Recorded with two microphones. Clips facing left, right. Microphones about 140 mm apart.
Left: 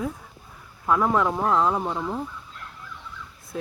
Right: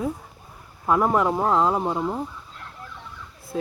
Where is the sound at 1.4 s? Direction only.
25° right (ahead or behind).